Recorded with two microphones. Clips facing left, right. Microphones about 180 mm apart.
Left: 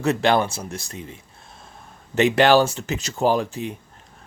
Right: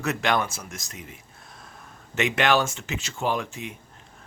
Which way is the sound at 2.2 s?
35° left (ahead or behind).